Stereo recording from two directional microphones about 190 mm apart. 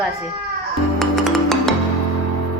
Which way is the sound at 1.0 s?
Centre (ahead or behind).